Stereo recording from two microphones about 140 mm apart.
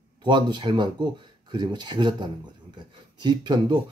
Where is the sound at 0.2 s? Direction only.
35° right (ahead or behind).